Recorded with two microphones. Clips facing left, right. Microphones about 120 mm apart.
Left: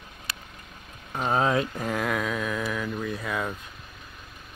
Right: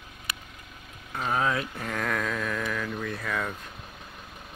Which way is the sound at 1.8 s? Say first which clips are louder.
Left 3 dB; 10° left (ahead or behind).